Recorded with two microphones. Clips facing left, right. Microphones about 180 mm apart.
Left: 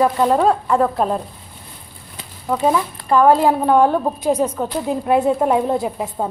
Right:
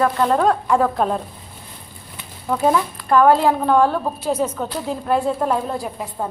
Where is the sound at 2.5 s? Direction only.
5° left (ahead or behind).